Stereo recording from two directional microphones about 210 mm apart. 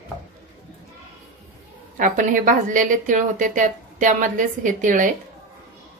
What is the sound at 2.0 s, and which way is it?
Speech, 40° right (ahead or behind).